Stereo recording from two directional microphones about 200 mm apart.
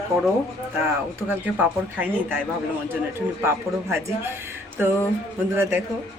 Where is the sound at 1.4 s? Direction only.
10° right (ahead or behind).